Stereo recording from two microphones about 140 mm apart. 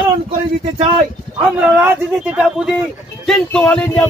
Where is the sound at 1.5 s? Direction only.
10° right (ahead or behind).